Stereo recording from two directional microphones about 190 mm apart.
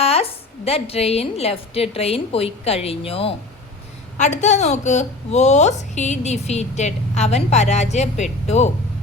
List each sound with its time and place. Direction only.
0.0 s a woman's voice: 30° left (ahead or behind)